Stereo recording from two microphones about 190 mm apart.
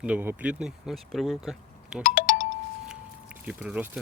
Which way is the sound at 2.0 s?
45° left (ahead or behind).